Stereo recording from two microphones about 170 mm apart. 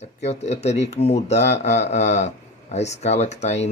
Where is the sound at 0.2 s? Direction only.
40° left (ahead or behind).